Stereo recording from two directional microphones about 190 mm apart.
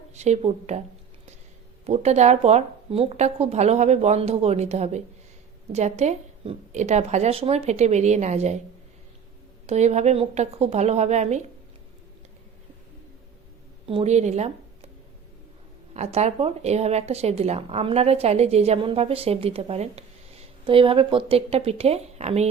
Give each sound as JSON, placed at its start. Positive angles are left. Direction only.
{"t": 0.1, "sound": "speech", "side_deg": -35}
{"t": 1.8, "sound": "speech", "side_deg": -35}
{"t": 9.6, "sound": "speech", "side_deg": -35}
{"t": 13.8, "sound": "speech", "side_deg": -30}
{"t": 16.0, "sound": "a woman's voice", "side_deg": -35}